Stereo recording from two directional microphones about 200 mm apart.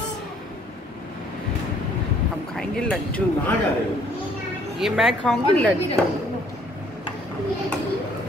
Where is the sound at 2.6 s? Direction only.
5° left (ahead or behind).